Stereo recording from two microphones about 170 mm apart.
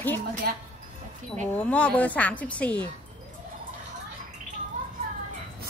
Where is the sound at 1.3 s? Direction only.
10° left (ahead or behind).